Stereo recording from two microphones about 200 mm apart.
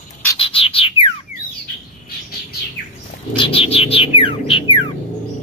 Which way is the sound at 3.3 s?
25° left (ahead or behind).